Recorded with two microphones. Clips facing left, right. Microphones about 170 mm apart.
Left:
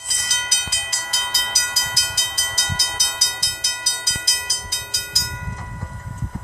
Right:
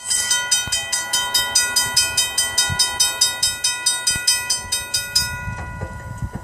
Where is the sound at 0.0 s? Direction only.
50° right (ahead or behind).